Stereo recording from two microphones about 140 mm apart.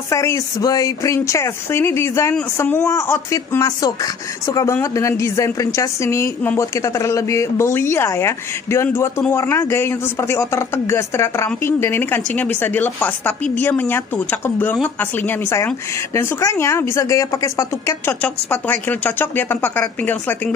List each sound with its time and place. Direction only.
0.1 s speech: 20° left (ahead or behind)